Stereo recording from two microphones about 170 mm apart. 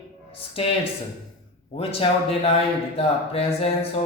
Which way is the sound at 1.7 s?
35° left (ahead or behind).